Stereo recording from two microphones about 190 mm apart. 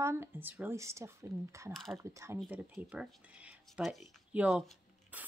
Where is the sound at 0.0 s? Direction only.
15° right (ahead or behind).